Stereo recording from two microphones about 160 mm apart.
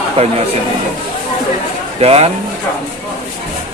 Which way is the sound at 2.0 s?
40° right (ahead or behind).